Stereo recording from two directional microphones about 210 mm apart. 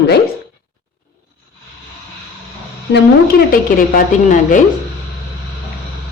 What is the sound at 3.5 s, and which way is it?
A woman's voice, 40° left (ahead or behind).